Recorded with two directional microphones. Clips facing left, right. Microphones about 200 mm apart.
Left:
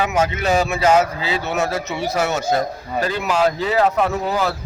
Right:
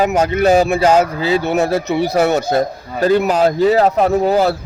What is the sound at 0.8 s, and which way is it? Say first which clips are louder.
Speech: right 3 dB; 35° right (ahead or behind).